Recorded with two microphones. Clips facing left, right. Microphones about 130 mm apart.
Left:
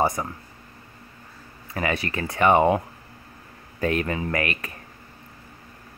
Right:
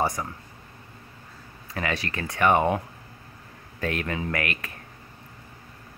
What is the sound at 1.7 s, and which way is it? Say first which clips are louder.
Speech: left 3 dB; 10° left (ahead or behind).